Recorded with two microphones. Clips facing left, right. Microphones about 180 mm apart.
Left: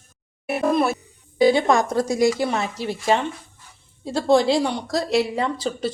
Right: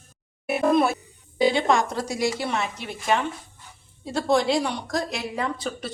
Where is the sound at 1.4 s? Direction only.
40° left (ahead or behind).